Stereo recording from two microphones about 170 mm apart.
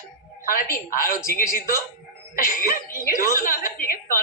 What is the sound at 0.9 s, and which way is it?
Speech, 55° left (ahead or behind).